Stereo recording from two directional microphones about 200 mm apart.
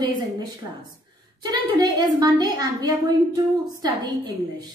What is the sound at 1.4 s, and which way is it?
A woman's voice, 20° right (ahead or behind).